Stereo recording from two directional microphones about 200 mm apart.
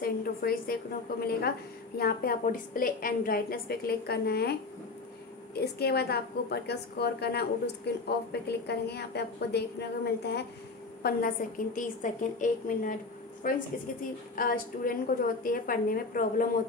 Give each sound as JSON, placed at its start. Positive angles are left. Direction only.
{"t": 0.0, "sound": "a woman's voice", "side_deg": 45}